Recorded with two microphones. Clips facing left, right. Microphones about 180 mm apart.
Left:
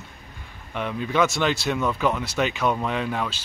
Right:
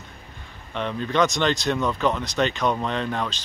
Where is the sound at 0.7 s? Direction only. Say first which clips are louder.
Even; 10° left (ahead or behind).